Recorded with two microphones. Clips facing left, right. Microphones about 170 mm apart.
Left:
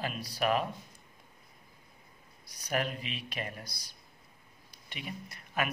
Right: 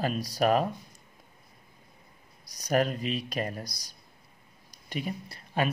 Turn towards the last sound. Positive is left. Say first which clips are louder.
# right 5 dB
turn(degrees=-35)  # may be behind; listen again after turning